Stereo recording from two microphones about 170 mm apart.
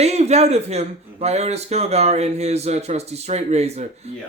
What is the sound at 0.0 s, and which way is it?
Speech, 40° right (ahead or behind).